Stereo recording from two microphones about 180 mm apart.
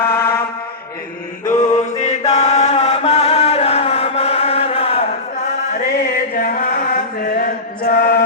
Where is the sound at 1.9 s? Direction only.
40° left (ahead or behind).